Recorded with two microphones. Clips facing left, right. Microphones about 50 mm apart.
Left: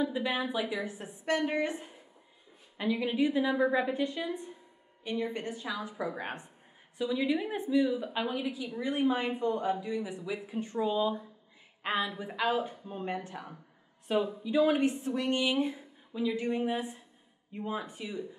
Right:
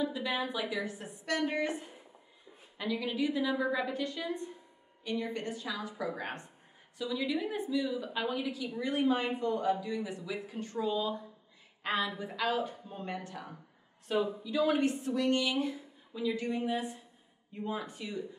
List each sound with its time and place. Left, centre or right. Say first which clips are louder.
0.0 s a woman's voice: left 2 dB; centre
2.8 s a woman's voice: left 4 dB; centre
14.0 s a woman's voice: left 2 dB; centre